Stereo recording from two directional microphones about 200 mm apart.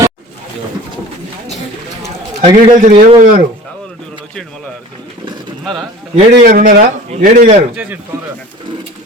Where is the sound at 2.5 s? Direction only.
40° right (ahead or behind).